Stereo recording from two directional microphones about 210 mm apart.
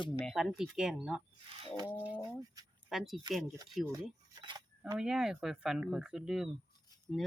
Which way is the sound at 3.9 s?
20° right (ahead or behind).